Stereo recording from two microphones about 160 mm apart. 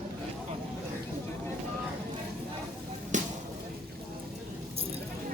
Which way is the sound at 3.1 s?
50° right (ahead or behind).